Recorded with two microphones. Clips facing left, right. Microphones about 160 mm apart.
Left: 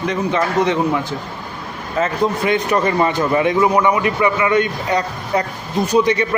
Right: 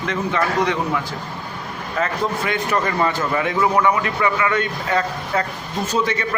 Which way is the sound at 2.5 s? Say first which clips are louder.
Left 5 dB; 20° left (ahead or behind).